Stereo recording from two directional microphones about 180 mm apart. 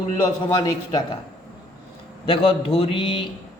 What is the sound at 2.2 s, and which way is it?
A man's voice, 30° left (ahead or behind).